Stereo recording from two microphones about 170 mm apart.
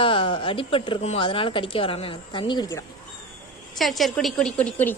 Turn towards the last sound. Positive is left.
turn(degrees=10)  # may be behind; listen again after turning